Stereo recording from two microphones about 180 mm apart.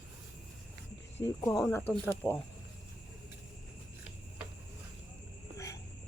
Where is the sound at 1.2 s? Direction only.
20° left (ahead or behind).